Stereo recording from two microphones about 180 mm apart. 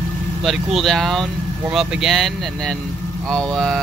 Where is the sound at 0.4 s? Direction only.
Centre (ahead or behind).